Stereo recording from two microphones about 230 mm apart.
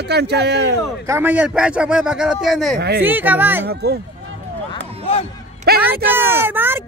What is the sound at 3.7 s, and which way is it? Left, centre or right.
Speech, right.